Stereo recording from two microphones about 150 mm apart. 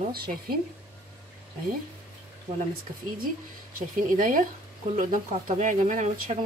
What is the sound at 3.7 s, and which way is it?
Speech, 60° right (ahead or behind).